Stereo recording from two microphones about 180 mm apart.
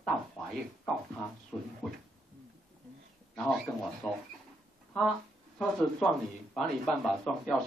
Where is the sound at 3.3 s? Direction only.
5° left (ahead or behind).